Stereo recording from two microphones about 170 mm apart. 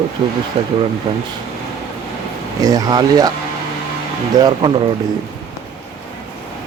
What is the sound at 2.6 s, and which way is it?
Speech, 20° right (ahead or behind).